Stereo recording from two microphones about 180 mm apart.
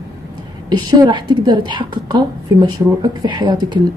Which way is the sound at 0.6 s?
25° right (ahead or behind).